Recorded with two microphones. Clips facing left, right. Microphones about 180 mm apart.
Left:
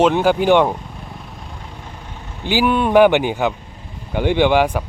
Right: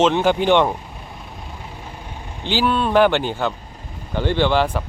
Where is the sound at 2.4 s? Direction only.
10° left (ahead or behind).